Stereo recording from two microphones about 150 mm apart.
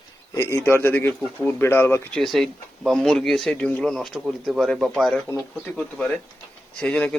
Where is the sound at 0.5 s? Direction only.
15° left (ahead or behind).